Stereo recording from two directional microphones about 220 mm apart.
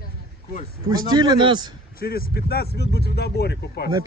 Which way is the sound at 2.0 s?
40° left (ahead or behind).